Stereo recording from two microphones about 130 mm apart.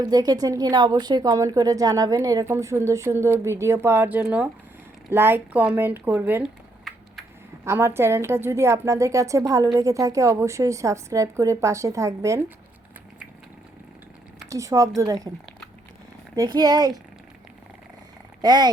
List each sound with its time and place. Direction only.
0.0 s a woman's voice: 30° right (ahead or behind); by 6.5 s 15° right (ahead or behind)
6.9 s a sound: centre (ahead or behind)
7.6 s a woman's voice: 20° right (ahead or behind)
14.5 s a woman's voice: 25° right (ahead or behind)
16.3 s speech: 30° right (ahead or behind)
18.4 s speech: 30° right (ahead or behind)